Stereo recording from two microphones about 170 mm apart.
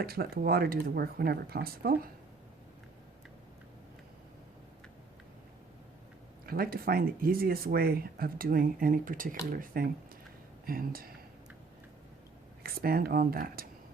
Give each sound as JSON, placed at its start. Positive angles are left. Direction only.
{"t": 0.0, "sound": "speech", "side_deg": -65}
{"t": 6.4, "sound": "speech", "side_deg": -60}
{"t": 12.6, "sound": "speech", "side_deg": -60}